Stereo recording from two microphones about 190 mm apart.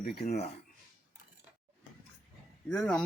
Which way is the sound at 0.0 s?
50° left (ahead or behind).